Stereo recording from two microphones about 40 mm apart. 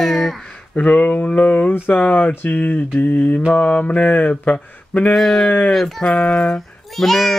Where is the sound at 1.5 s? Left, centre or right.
Left.